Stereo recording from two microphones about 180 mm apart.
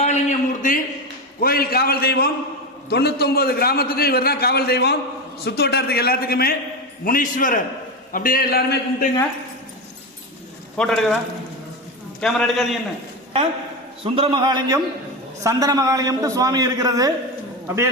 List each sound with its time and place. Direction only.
0.0 s a man's voice: 40° left (ahead or behind)
1.4 s a man's voice: 55° left (ahead or behind)
10.8 s a man's voice: centre (ahead or behind)
12.2 s a man's voice: 5° left (ahead or behind)
14.0 s a man's voice: 30° right (ahead or behind)